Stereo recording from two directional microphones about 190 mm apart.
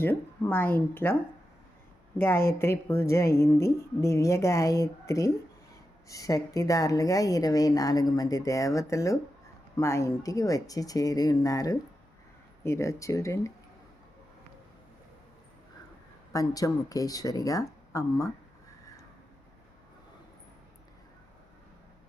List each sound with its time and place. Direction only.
0.0 s speech: 10° left (ahead or behind)
2.1 s a woman's voice: 10° left (ahead or behind)
16.3 s a woman's voice: 20° left (ahead or behind)